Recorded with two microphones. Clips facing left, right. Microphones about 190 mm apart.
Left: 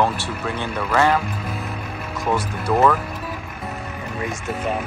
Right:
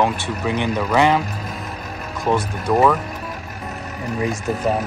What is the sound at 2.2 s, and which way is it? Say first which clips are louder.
Speech: right 3 dB; 15° right (ahead or behind).